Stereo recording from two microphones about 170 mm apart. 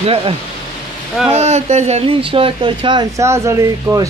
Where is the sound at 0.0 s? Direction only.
35° right (ahead or behind).